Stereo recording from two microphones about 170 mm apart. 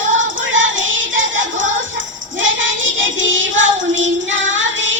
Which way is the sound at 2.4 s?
90° right.